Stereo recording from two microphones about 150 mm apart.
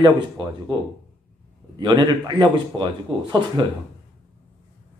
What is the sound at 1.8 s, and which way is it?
Speech, 30° right (ahead or behind).